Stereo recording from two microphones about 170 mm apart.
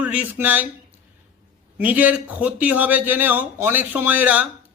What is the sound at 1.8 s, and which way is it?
A man's voice, 10° right (ahead or behind).